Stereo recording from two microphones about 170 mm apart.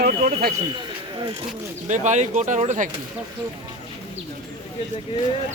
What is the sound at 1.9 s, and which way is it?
Speech, 45° right (ahead or behind).